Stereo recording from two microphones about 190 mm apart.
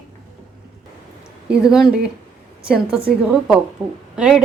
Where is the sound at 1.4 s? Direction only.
5° right (ahead or behind).